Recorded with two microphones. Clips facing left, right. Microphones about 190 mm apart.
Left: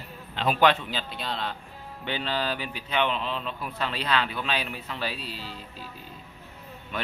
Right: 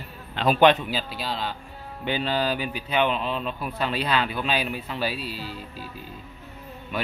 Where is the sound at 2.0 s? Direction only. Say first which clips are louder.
Right 4 dB; 15° right (ahead or behind).